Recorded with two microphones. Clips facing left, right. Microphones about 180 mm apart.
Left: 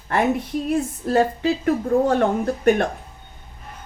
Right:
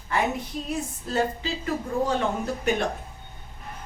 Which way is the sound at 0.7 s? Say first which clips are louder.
Left 8 dB; 60° left (ahead or behind).